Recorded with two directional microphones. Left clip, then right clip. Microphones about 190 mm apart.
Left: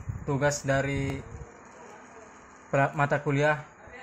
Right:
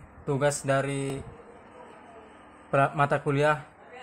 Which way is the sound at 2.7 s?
15° right (ahead or behind).